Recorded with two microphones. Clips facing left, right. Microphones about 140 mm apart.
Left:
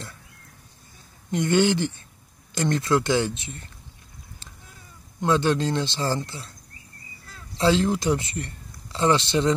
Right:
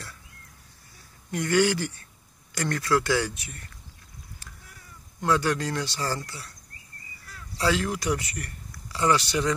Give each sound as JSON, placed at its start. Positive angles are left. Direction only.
{"t": 1.3, "sound": "speech", "side_deg": 25}
{"t": 4.4, "sound": "a sound", "side_deg": 20}
{"t": 5.2, "sound": "speech", "side_deg": 25}